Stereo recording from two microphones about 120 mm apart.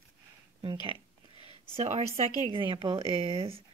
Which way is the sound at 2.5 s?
45° right (ahead or behind).